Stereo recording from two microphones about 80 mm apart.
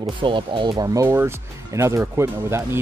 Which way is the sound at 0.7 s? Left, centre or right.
Right.